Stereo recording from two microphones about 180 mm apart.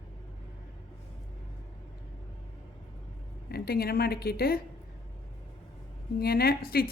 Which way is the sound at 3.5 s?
60° left (ahead or behind).